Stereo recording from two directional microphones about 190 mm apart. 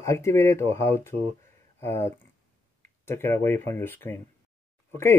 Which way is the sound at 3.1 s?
10° left (ahead or behind).